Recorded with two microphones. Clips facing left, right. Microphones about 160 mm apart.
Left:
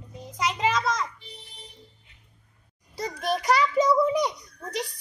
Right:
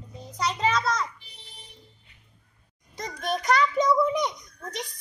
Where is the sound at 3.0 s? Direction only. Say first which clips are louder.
Left 2 dB; 10° left (ahead or behind).